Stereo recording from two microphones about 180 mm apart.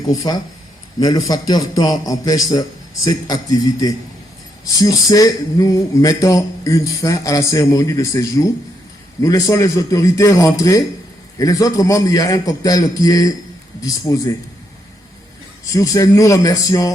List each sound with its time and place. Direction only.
0.1 s speech: 20° left (ahead or behind)
15.6 s speech: 20° left (ahead or behind)